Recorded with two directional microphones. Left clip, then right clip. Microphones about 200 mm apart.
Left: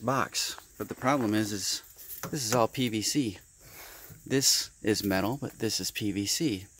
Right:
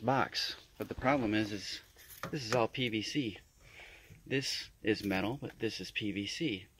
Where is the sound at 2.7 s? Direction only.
85° left.